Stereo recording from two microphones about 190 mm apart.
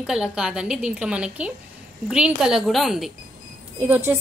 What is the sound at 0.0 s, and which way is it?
A woman's voice, 5° right (ahead or behind).